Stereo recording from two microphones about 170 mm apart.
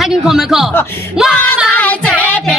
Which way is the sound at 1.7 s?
10° left (ahead or behind).